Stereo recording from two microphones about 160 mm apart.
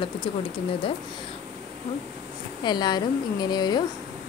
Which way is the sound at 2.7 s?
25° left (ahead or behind).